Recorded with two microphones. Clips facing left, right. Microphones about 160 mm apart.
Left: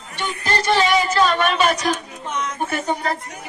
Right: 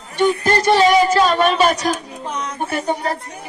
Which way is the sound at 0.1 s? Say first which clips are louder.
Right 8 dB; 40° right (ahead or behind).